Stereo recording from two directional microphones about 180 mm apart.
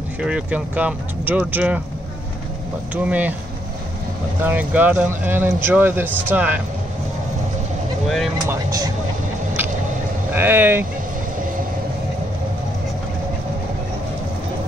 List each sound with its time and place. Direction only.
0.2 s speech: 5° right (ahead or behind)
2.9 s speech: 10° right (ahead or behind)
4.4 s speech: 10° right (ahead or behind)
8.5 s speech: 20° right (ahead or behind)
10.3 s speech: 10° right (ahead or behind)